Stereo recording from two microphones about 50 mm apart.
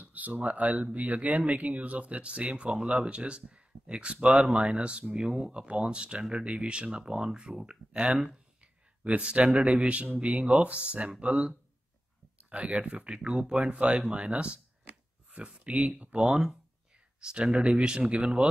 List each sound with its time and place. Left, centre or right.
0.0 s speech: right; by 18.1 s centre